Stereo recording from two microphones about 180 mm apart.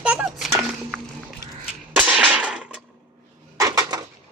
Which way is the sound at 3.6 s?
20° right (ahead or behind).